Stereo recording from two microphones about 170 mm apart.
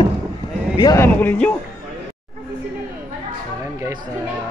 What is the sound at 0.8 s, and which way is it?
Speech, 20° left (ahead or behind).